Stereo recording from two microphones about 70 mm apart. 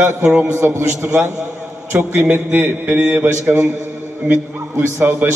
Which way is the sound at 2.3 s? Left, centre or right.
Right.